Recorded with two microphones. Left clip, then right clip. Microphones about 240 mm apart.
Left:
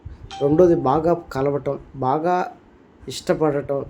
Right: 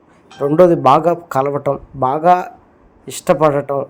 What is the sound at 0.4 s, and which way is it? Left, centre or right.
A man's voice, centre.